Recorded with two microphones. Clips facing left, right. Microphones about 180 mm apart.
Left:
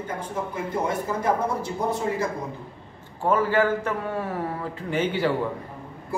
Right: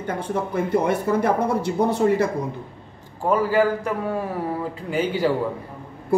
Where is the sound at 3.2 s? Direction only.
10° right (ahead or behind).